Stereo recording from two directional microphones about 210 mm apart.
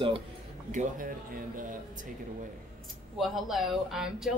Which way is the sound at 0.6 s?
40° right (ahead or behind).